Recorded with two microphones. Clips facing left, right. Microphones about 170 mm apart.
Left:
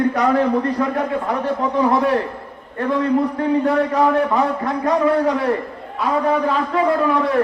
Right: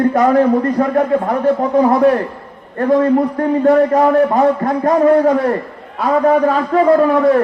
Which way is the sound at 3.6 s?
45° right (ahead or behind).